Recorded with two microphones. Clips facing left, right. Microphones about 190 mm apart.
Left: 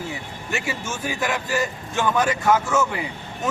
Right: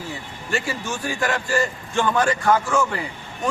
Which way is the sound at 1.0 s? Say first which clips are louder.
Right 1 dB; 20° left (ahead or behind).